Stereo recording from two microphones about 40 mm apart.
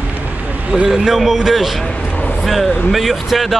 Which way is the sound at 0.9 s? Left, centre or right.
Centre.